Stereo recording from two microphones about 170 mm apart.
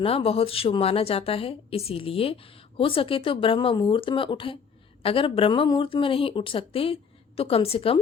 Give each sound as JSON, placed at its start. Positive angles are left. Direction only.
{"t": 0.0, "sound": "a woman's voice", "side_deg": 35}